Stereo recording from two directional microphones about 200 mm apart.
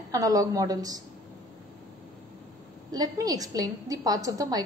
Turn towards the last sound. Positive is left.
turn(degrees=-20)  # may be behind; listen again after turning